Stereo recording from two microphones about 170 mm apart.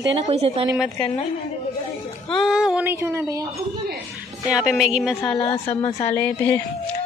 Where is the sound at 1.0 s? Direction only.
30° left (ahead or behind).